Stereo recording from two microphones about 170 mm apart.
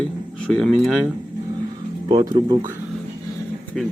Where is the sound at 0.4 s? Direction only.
5° left (ahead or behind).